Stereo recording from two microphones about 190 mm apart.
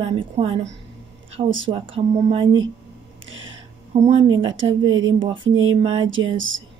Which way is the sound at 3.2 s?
90° right.